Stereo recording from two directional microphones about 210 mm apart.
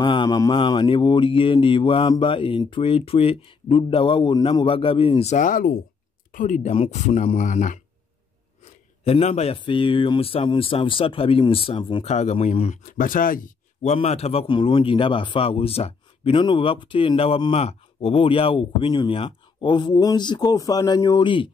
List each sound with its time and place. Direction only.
0.0 s a man's voice: 20° left (ahead or behind); by 13.9 s 40° left (ahead or behind)
13.9 s a man's voice: 30° left (ahead or behind)